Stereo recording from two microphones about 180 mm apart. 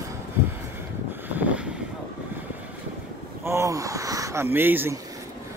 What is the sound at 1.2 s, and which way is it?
Vehicle, 10° right (ahead or behind).